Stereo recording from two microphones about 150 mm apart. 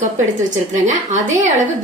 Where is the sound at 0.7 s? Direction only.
55° right (ahead or behind).